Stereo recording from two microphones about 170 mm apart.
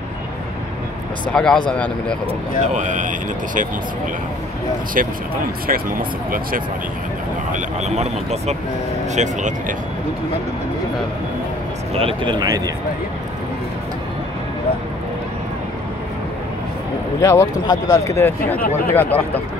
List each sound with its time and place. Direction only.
1.3 s speech: 5° left (ahead or behind)
2.6 s speech: 45° right (ahead or behind)
4.9 s speech: 55° right (ahead or behind)
7.5 s speech: 40° right (ahead or behind)
11.9 s speech: 35° right (ahead or behind)
17.2 s speech: 15° left (ahead or behind)